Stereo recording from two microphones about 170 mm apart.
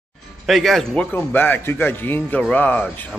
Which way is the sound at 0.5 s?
Centre (ahead or behind).